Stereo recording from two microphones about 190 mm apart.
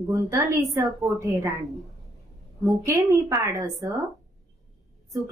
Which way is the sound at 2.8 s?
15° right (ahead or behind).